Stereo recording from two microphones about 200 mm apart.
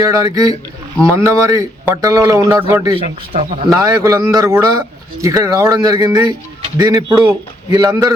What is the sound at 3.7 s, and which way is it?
A man's voice, 15° right (ahead or behind).